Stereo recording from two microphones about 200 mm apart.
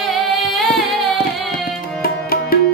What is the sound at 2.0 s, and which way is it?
Music, 50° left (ahead or behind).